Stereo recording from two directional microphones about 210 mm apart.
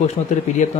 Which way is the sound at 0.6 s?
35° left (ahead or behind).